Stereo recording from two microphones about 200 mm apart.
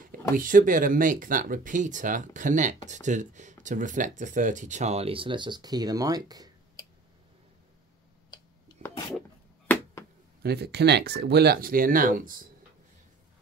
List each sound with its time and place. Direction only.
0.4 s speech: 40° right (ahead or behind); by 6.5 s 20° right (ahead or behind)
8.8 s a sound: 35° right (ahead or behind)
10.4 s speech: 55° right (ahead or behind)